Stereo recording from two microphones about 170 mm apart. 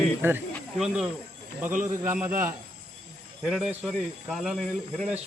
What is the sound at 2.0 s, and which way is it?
Speech, 15° right (ahead or behind).